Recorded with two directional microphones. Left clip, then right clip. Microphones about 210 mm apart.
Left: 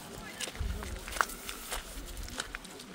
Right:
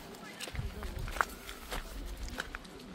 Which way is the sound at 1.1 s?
15° left (ahead or behind).